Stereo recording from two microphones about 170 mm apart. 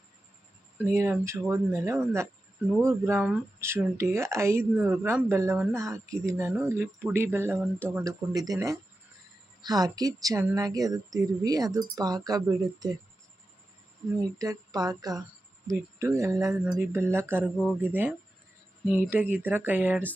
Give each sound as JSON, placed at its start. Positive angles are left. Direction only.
{"t": 0.8, "sound": "speech", "side_deg": -15}
{"t": 14.3, "sound": "speech", "side_deg": -20}
{"t": 16.5, "sound": "speech", "side_deg": -5}